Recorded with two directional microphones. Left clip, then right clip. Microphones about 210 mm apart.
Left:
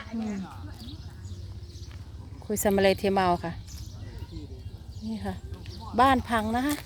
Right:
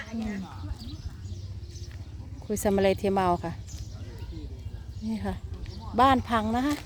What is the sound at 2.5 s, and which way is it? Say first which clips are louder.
Speech: left 1 dB; 5° left (ahead or behind).